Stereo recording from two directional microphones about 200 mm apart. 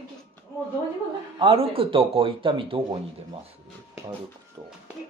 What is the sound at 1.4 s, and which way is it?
Speech, 30° right (ahead or behind).